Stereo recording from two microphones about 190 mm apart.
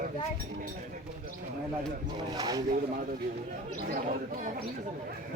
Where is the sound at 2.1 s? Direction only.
20° right (ahead or behind).